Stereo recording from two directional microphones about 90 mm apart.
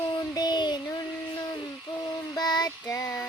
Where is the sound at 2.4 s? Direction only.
45° left (ahead or behind).